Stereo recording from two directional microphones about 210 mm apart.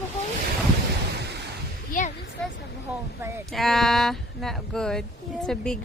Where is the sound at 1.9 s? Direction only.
35° left (ahead or behind).